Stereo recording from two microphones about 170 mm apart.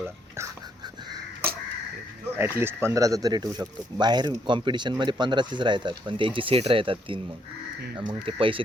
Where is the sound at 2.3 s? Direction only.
15° right (ahead or behind); by 7.2 s 30° right (ahead or behind).